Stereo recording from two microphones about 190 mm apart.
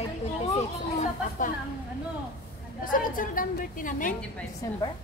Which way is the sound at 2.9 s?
45° left (ahead or behind).